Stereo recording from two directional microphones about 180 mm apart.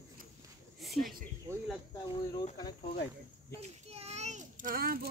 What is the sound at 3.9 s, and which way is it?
Child singing, 35° right (ahead or behind).